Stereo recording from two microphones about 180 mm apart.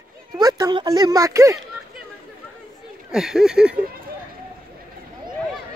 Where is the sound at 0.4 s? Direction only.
20° right (ahead or behind).